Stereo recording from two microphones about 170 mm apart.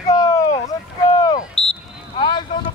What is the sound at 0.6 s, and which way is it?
Boat, 25° left (ahead or behind).